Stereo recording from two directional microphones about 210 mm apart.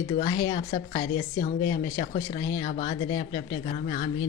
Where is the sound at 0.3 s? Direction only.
20° left (ahead or behind).